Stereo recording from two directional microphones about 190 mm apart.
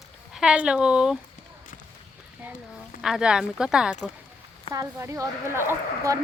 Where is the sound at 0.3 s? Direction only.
5° right (ahead or behind).